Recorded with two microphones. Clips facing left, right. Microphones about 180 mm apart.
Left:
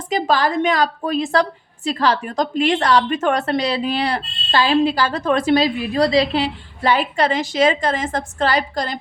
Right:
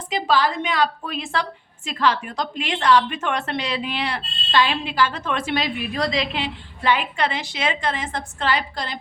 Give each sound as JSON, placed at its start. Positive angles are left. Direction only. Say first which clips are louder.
{"t": 0.1, "sound": "a woman's voice", "louder": "left 3 dB", "side_deg": 45}